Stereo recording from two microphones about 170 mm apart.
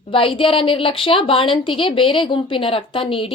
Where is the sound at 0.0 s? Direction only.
30° left (ahead or behind).